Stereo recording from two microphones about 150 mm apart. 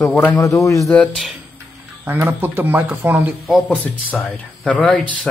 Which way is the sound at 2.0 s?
15° right (ahead or behind).